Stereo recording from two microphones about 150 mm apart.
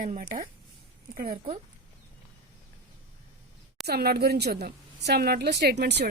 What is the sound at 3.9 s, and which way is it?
A woman's voice, 90° right.